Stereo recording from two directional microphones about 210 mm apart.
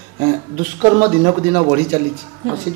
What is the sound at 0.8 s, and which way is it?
Speech, 25° right (ahead or behind).